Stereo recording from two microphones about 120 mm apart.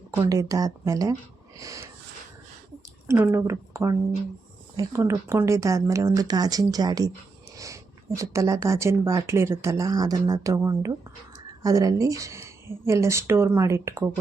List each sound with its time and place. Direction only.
0.2 s speech: 30° right (ahead or behind)
3.1 s speech: 20° right (ahead or behind)